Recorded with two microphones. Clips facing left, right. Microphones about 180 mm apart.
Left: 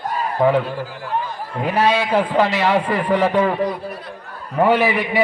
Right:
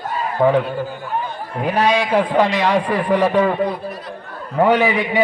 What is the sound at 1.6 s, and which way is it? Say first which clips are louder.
A man's voice: right 1 dB; 15° right (ahead or behind).